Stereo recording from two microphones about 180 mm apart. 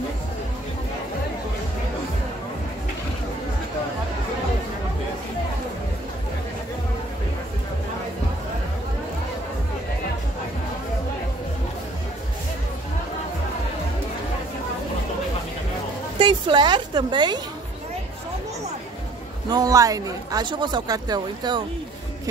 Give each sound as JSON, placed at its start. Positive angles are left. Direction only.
{"t": 16.2, "sound": "a woman's voice", "side_deg": -25}
{"t": 19.5, "sound": "speech", "side_deg": -20}